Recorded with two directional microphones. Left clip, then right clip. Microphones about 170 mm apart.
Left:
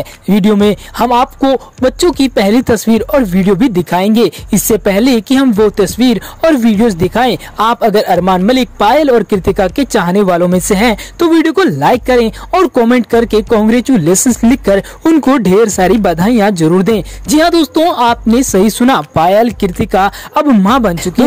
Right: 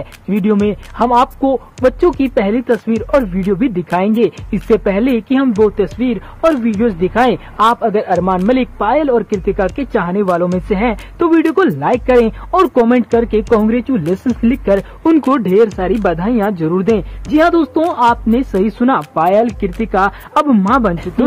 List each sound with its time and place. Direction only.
0.3 s speech: 35° left (ahead or behind)